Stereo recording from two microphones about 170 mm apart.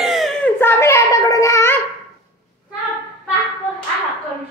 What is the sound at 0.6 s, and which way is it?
Child singing, 15° left (ahead or behind).